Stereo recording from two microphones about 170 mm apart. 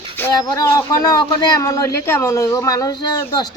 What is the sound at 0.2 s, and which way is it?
Speech, 20° left (ahead or behind).